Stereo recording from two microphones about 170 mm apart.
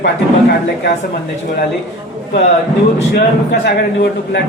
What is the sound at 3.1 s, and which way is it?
Speech, 70° left (ahead or behind).